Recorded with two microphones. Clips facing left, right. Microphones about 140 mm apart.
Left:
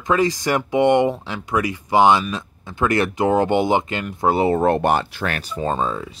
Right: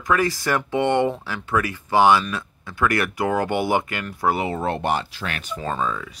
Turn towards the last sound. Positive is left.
turn(degrees=30)  # may be behind; listen again after turning